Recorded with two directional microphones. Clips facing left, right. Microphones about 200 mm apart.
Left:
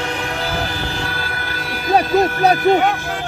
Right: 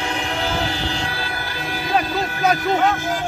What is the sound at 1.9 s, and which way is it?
Vehicle, 35° left (ahead or behind).